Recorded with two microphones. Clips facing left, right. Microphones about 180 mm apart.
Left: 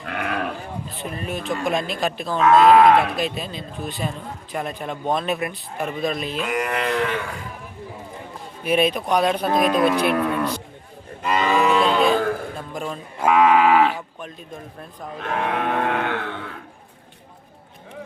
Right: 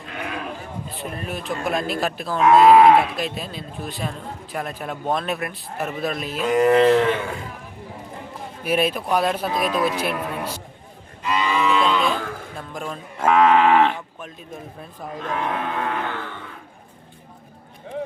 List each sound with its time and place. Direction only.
0.0 s sheep: 65° left (ahead or behind)
0.9 s a man's voice: centre (ahead or behind)
6.5 s a sound: 25° right (ahead or behind)
8.6 s a man's voice: 5° right (ahead or behind)
9.5 s speech: 55° left (ahead or behind)
10.1 s music: 65° left (ahead or behind)
11.2 s cattle: 50° left (ahead or behind)
12.5 s cattle: centre (ahead or behind)
15.2 s music: 65° left (ahead or behind)